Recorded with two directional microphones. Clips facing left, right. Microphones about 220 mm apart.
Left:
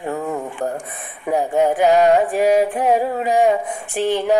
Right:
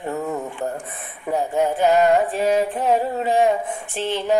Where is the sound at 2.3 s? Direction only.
15° left (ahead or behind).